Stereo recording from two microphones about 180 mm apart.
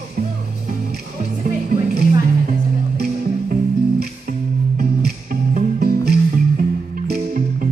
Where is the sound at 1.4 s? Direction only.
55° right (ahead or behind).